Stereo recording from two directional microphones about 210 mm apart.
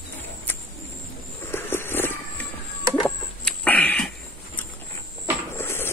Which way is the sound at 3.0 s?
5° left (ahead or behind).